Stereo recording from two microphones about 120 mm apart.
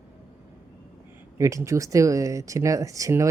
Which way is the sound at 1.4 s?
25° right (ahead or behind).